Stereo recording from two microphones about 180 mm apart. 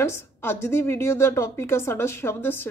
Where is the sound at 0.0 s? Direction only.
15° left (ahead or behind).